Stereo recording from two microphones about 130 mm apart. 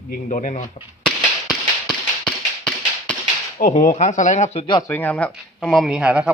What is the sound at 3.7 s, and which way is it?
Speech, 65° left (ahead or behind).